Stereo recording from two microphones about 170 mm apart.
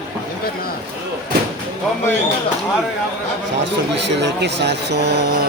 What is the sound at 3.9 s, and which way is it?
Speech, 90° right.